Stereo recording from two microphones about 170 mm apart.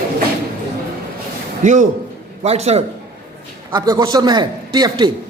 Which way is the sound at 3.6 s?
25° right (ahead or behind).